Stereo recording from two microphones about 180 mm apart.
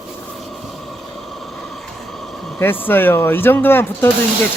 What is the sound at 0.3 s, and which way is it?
Vehicle, centre (ahead or behind).